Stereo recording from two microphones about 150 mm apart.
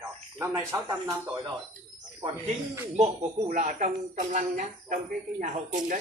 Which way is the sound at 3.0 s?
50° right (ahead or behind).